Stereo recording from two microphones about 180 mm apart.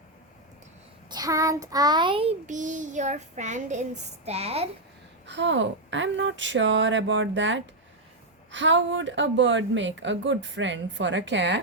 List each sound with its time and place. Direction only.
1.1 s a child's voice: 20° right (ahead or behind)
2.5 s child singing: 45° right (ahead or behind)
5.2 s a woman's voice: 80° right